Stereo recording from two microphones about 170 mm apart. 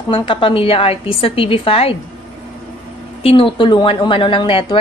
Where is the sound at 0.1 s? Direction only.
30° left (ahead or behind).